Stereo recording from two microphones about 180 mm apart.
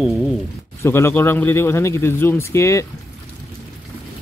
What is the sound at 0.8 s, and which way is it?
Speech, 15° left (ahead or behind).